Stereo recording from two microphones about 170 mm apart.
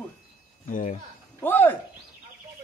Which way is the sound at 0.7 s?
50° left (ahead or behind).